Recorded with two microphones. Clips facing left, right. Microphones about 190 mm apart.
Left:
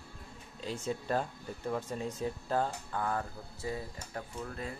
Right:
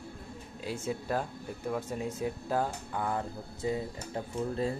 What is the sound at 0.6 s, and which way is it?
Speech, 10° right (ahead or behind).